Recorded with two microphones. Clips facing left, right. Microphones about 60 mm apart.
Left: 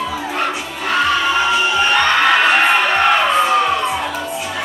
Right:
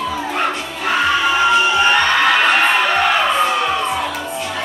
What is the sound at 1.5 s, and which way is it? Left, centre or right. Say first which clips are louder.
Crowd: right 2 dB; centre.